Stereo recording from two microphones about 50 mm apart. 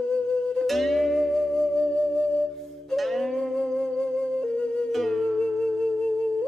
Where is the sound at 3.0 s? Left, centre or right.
Centre.